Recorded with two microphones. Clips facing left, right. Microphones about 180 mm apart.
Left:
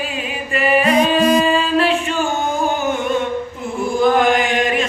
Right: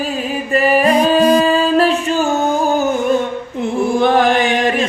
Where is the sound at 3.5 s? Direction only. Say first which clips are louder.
Right 6 dB; 70° right (ahead or behind).